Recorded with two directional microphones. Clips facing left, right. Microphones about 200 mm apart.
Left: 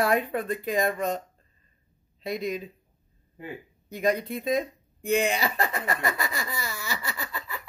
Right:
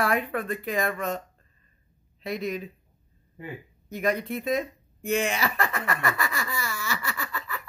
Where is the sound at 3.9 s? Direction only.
30° left (ahead or behind).